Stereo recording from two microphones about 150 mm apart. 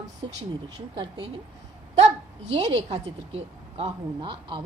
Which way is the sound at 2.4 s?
40° right (ahead or behind).